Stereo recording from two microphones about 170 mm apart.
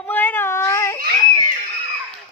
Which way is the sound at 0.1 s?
10° left (ahead or behind).